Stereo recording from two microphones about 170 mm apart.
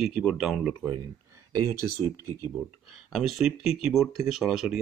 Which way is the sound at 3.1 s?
Centre (ahead or behind).